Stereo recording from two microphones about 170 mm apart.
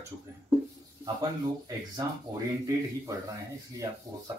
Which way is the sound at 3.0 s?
20° right (ahead or behind).